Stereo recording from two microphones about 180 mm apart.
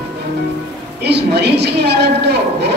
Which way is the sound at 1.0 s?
65° right (ahead or behind).